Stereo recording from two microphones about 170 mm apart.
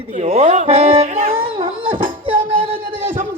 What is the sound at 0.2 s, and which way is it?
Music, 40° right (ahead or behind).